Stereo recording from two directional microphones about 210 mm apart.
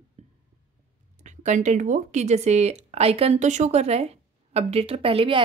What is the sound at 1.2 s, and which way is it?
Speech, 35° right (ahead or behind).